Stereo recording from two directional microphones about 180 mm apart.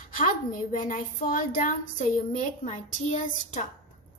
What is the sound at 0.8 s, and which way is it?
A woman's voice, 45° left (ahead or behind).